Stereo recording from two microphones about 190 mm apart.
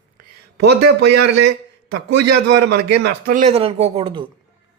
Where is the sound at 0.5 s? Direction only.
60° right (ahead or behind).